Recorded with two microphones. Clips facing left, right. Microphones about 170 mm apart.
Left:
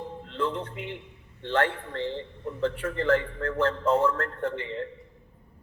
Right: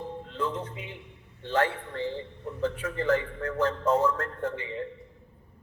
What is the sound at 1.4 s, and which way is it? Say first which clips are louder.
A man's voice: left 1 dB; 55° left (ahead or behind).